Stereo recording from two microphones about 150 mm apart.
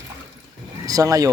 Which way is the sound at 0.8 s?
25° right (ahead or behind).